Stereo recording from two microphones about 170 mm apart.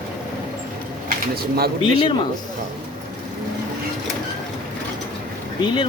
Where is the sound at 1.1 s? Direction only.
65° right (ahead or behind).